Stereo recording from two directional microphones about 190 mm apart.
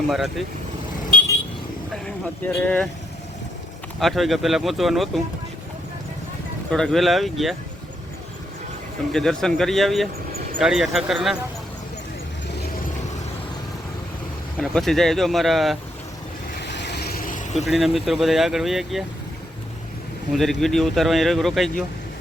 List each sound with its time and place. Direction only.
0.1 s speech: centre (ahead or behind)
2.0 s speech: 5° left (ahead or behind)
4.0 s speech: centre (ahead or behind)
6.7 s speech: 5° left (ahead or behind)
9.1 s speech: centre (ahead or behind)
14.6 s speech: centre (ahead or behind)
16.6 s vehicle: 65° left (ahead or behind); by 17.7 s 40° left (ahead or behind)
17.7 s speech: centre (ahead or behind)
20.3 s speech: centre (ahead or behind)